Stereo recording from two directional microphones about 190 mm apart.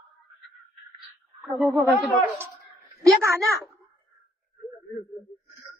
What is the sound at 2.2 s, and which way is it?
A woman's voice, 10° right (ahead or behind).